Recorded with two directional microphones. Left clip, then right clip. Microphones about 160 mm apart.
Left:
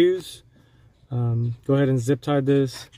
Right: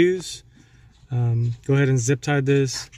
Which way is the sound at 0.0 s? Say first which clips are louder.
Even; 50° left (ahead or behind).